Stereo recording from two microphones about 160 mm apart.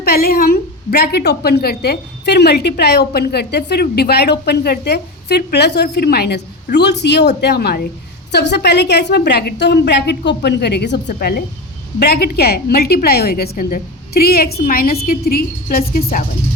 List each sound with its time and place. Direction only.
0.0 s a woman's voice: 75° left (ahead or behind)